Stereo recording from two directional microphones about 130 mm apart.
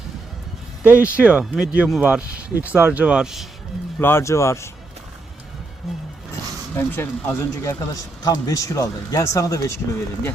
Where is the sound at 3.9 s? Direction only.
15° left (ahead or behind).